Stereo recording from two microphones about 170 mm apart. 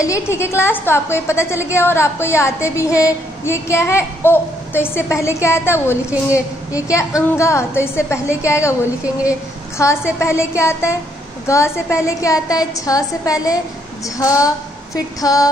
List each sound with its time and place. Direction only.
0.0 s a woman's voice: 15° left (ahead or behind)